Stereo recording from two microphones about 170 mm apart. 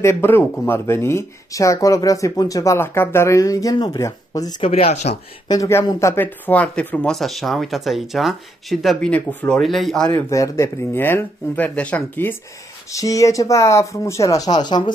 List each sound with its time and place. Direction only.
0.0 s speech: 15° left (ahead or behind)
4.6 s speech: 35° left (ahead or behind)
5.5 s speech: 15° left (ahead or behind)
10.1 s speech: 20° left (ahead or behind)